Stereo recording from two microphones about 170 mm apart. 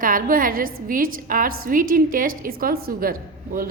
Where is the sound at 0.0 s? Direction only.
55° right (ahead or behind).